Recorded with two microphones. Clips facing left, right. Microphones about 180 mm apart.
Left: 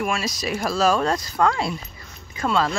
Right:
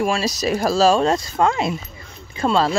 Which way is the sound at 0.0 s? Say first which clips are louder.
Right 5 dB; 30° right (ahead or behind).